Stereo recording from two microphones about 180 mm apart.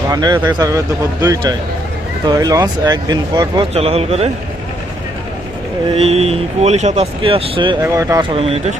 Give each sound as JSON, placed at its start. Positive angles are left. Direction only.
{"t": 0.1, "sound": "speech", "side_deg": -20}
{"t": 5.9, "sound": "speech", "side_deg": -35}